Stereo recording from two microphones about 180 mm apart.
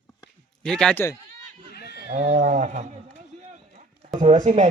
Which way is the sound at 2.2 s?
45° right (ahead or behind).